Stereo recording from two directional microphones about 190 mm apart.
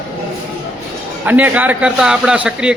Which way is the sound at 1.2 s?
10° right (ahead or behind).